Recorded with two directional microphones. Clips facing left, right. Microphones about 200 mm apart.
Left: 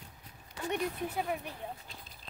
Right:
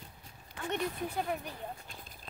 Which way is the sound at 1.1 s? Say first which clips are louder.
Even; 5° left (ahead or behind).